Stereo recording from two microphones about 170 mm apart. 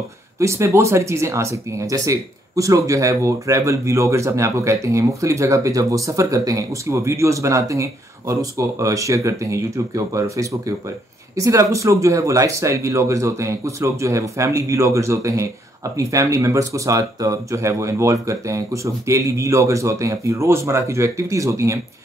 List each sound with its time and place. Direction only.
0.4 s speech: 15° right (ahead or behind)